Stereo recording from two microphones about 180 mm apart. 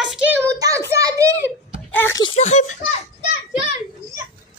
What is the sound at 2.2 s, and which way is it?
Speech, 35° left (ahead or behind).